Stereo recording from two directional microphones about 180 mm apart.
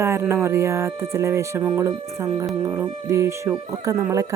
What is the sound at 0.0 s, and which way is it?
Speech, 15° right (ahead or behind).